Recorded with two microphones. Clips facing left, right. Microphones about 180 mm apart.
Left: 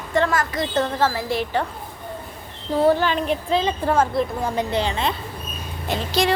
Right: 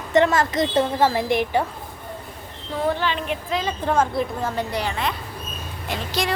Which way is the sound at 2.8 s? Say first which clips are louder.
Left 5 dB; 45° left (ahead or behind).